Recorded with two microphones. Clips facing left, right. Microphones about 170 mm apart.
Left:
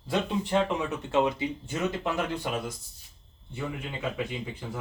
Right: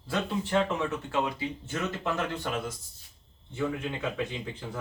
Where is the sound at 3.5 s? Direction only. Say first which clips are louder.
Right 4 dB; 10° left (ahead or behind).